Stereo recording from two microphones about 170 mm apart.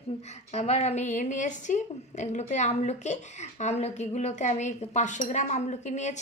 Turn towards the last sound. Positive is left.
turn(degrees=45)  # may be behind; listen again after turning